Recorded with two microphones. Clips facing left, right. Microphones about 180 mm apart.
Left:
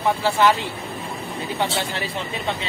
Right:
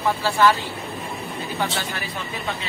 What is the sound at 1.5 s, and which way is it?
Speech, 25° left (ahead or behind).